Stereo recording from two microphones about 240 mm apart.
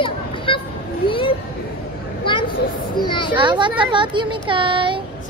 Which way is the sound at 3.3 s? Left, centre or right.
Centre.